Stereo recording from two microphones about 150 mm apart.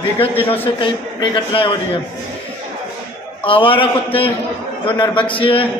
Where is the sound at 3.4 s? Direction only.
35° left (ahead or behind).